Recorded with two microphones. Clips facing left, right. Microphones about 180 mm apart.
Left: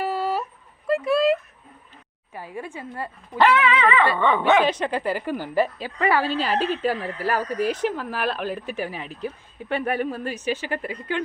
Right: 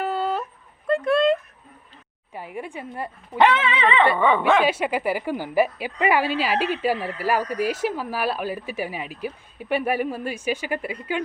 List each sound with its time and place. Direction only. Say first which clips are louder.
0.0 s yodeling: even; 10° left (ahead or behind)
0.9 s speech: right 1 dB; 5° left (ahead or behind)
2.3 s speech: right 1 dB; 20° right (ahead or behind)
4.2 s speech: even; centre (ahead or behind)
4.6 s a woman's voice: right 1 dB; 10° right (ahead or behind)